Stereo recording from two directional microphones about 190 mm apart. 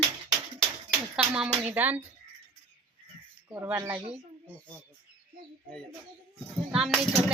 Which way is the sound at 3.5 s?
15° right (ahead or behind).